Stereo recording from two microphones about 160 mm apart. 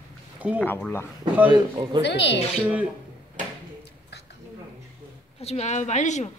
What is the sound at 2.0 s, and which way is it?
Speech, 90° left.